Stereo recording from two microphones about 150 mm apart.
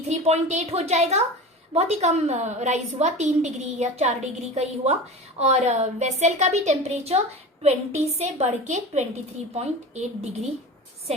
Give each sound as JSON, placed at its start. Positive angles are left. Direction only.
{"t": 0.1, "sound": "a woman's voice", "side_deg": -50}